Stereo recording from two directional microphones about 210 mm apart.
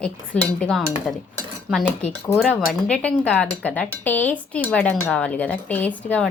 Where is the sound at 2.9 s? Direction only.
5° left (ahead or behind).